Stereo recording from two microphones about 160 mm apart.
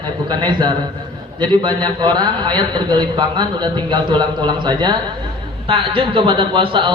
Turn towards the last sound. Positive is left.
turn(degrees=-30)  # may be behind; listen again after turning